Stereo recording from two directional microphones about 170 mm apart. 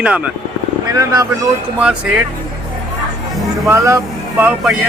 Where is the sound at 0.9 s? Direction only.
20° right (ahead or behind).